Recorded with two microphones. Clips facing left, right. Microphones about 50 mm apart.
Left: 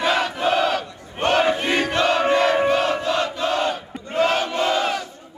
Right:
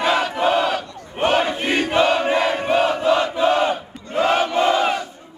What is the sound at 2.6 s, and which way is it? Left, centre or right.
Battle cry, centre.